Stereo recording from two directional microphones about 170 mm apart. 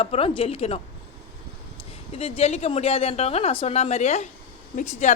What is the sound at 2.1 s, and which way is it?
A woman's voice, 35° left (ahead or behind).